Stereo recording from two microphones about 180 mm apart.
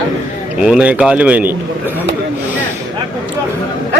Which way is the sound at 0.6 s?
5° right (ahead or behind).